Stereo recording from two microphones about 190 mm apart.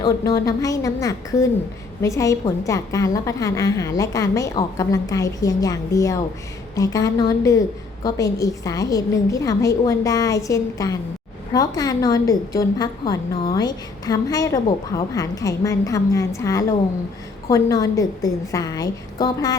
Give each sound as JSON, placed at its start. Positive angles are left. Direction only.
{"t": 0.0, "sound": "a woman's voice", "side_deg": 20}